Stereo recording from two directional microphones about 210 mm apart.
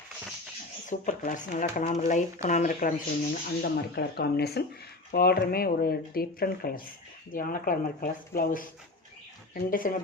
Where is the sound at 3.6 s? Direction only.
50° left (ahead or behind).